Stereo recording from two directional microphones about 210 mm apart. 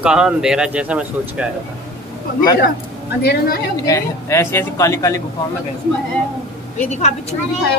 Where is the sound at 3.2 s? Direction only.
50° left (ahead or behind).